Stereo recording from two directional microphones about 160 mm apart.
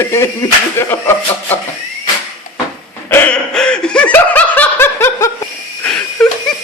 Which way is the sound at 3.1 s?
10° left (ahead or behind).